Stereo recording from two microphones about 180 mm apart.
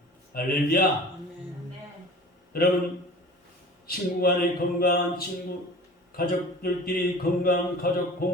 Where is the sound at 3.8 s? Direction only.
55° left (ahead or behind).